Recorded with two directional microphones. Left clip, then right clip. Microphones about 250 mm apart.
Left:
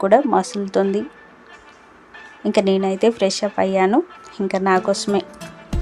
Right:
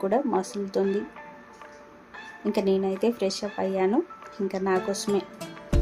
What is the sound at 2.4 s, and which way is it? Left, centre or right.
A woman's voice, centre.